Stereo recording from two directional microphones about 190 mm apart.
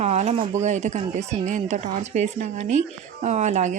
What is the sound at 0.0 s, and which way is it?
Speech, 35° right (ahead or behind).